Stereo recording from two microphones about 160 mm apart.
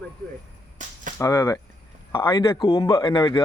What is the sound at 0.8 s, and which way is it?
Cap gun, 50° right (ahead or behind).